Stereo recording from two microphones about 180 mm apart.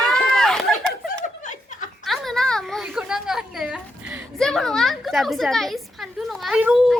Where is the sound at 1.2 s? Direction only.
45° left (ahead or behind).